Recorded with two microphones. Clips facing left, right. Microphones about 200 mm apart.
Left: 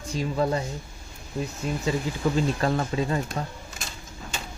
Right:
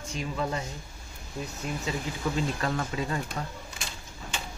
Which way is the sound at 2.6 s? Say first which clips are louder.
Left 5 dB; 30° left (ahead or behind).